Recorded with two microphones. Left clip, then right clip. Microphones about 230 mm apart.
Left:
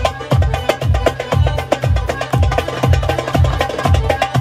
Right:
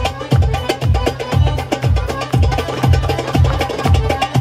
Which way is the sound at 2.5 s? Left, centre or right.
Left.